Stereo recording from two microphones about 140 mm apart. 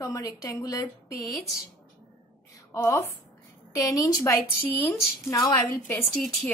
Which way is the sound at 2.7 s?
20° left (ahead or behind).